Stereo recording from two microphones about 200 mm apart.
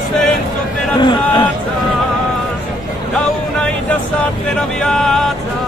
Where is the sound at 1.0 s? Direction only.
20° left (ahead or behind).